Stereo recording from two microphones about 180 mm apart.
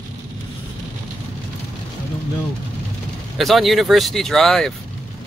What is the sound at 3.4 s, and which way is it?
Speech, centre (ahead or behind).